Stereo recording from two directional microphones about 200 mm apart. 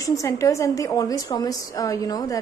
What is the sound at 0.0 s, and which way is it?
A woman's voice, 15° left (ahead or behind).